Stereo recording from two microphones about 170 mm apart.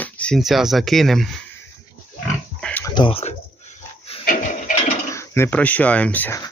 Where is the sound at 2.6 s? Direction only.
10° left (ahead or behind).